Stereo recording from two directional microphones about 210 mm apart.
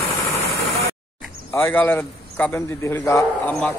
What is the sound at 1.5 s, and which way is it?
A man's voice, 10° left (ahead or behind).